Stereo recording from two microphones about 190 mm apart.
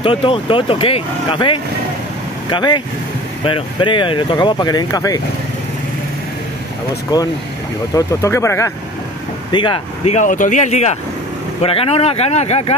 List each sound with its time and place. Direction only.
0.0 s speech: 30° left (ahead or behind)
7.1 s speech: 20° left (ahead or behind)
9.5 s speech: 25° left (ahead or behind)